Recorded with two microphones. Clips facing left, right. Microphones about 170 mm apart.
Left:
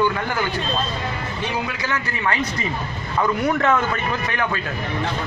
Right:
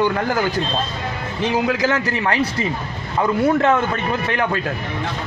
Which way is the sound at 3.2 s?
25° right (ahead or behind).